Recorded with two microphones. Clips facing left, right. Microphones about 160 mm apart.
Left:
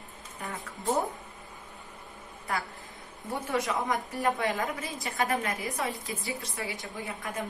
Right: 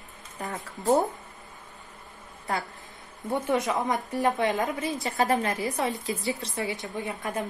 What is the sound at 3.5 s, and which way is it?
A woman's voice, 20° right (ahead or behind).